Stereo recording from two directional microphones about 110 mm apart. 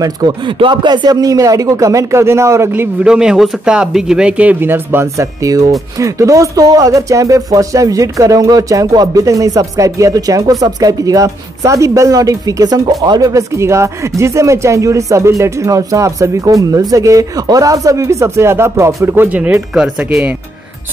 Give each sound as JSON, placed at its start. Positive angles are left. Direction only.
{"t": 0.0, "sound": "speech", "side_deg": -40}